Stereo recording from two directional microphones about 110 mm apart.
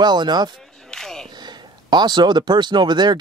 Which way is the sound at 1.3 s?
40° right (ahead or behind).